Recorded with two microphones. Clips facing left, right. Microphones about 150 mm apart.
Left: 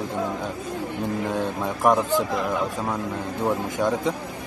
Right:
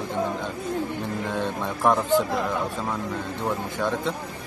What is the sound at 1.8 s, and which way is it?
Speech, 10° left (ahead or behind).